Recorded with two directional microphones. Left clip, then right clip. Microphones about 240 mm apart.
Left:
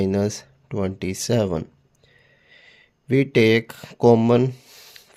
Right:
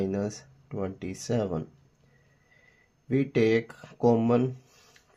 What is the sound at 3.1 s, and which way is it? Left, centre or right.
Speech, left.